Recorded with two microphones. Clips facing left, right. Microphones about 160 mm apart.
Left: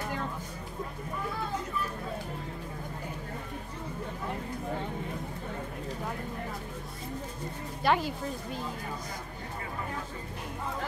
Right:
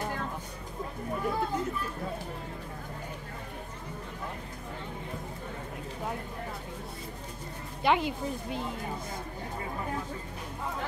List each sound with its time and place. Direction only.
7.8 s speech: 20° right (ahead or behind)